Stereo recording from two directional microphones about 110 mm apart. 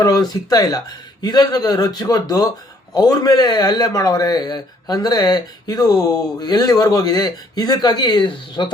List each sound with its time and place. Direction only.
0.0 s a man's voice: 35° left (ahead or behind)